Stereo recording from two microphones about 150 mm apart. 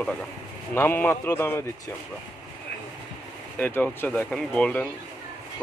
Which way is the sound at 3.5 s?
10° left (ahead or behind).